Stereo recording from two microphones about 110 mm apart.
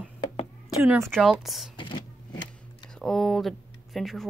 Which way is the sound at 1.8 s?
45° left (ahead or behind).